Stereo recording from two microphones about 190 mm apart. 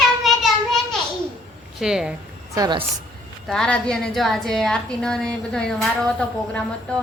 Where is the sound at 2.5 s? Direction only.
20° right (ahead or behind).